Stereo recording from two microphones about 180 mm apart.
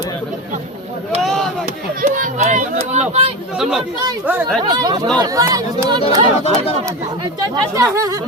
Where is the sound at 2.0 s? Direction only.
40° right (ahead or behind).